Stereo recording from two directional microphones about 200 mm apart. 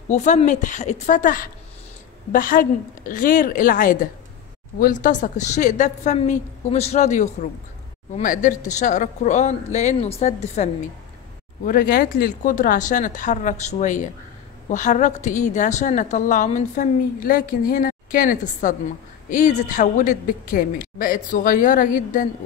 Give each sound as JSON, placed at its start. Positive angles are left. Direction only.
{"t": 0.1, "sound": "a woman's voice", "side_deg": 35}
{"t": 11.6, "sound": "a woman's voice", "side_deg": 45}